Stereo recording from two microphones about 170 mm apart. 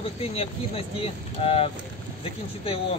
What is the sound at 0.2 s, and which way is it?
Speech, 35° left (ahead or behind).